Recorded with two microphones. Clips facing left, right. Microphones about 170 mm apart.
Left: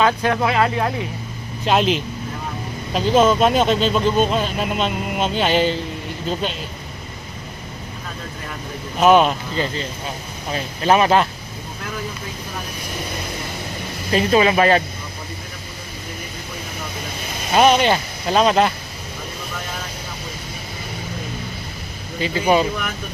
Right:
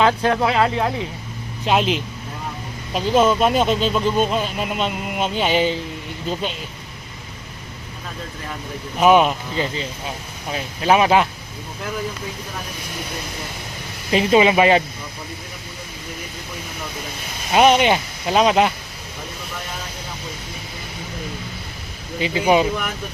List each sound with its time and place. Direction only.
0.0 s speech: 25° right (ahead or behind)
0.4 s speech: centre (ahead or behind)
9.0 s speech: 5° right (ahead or behind)
14.1 s speech: 15° right (ahead or behind)
17.5 s speech: 15° right (ahead or behind)
22.2 s speech: 15° right (ahead or behind)